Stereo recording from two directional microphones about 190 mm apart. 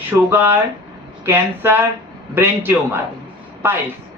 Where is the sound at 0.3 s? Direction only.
10° right (ahead or behind).